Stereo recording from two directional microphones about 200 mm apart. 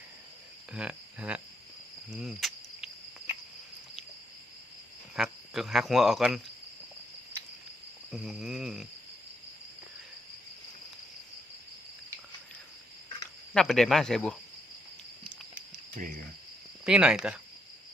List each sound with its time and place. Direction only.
0.7 s speech: 5° right (ahead or behind)
5.1 s speech: centre (ahead or behind)
8.1 s speech: centre (ahead or behind)
13.5 s speech: centre (ahead or behind)
15.7 s cricket: 40° right (ahead or behind)
16.8 s speech: 5° right (ahead or behind)